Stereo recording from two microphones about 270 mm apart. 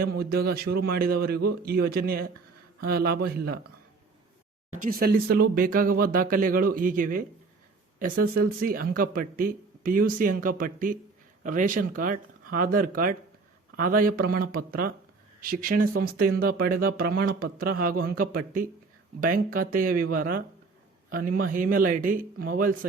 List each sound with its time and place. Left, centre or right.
0.0 s speech: right
4.7 s speech: right